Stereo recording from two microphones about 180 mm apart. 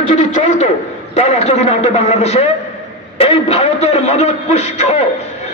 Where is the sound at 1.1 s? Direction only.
35° left (ahead or behind).